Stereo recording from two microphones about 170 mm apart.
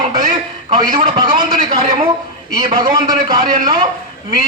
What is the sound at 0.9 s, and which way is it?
Speech, 40° right (ahead or behind).